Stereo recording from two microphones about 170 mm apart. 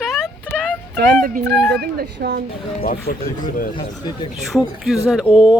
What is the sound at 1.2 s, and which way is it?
Speech, 60° right (ahead or behind).